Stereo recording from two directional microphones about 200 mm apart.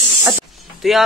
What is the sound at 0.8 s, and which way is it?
Speech, centre (ahead or behind).